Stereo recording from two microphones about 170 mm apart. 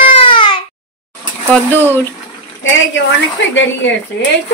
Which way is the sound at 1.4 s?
10° left (ahead or behind).